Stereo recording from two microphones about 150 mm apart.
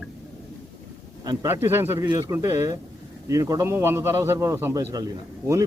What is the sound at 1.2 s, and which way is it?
A man's voice, 25° right (ahead or behind).